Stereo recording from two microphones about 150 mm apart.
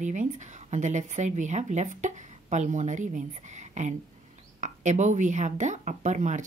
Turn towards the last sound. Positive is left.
turn(degrees=-55)  # may be behind; listen again after turning